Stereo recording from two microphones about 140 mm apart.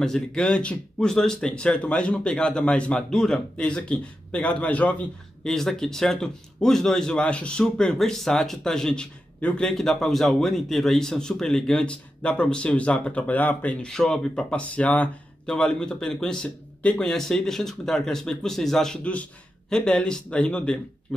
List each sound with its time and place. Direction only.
0.0 s speech: 5° left (ahead or behind)